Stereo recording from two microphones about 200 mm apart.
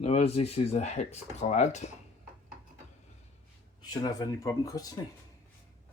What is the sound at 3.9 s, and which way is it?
Speech, 20° left (ahead or behind).